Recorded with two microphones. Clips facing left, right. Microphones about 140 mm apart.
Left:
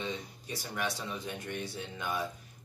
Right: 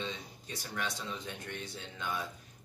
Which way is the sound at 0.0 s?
15° left (ahead or behind).